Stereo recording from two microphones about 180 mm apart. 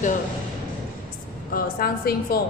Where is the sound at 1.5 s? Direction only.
55° left (ahead or behind).